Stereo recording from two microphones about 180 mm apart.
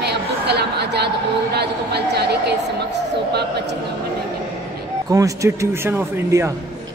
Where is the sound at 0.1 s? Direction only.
65° right (ahead or behind).